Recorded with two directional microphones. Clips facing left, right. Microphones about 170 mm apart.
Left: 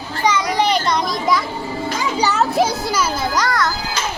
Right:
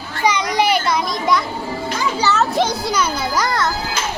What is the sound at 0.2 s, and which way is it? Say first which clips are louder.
Children playing: even; 15° right (ahead or behind).